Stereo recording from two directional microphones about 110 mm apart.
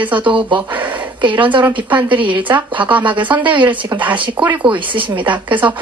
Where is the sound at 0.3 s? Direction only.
50° right (ahead or behind).